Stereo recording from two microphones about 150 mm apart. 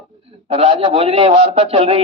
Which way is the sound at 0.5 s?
40° right (ahead or behind).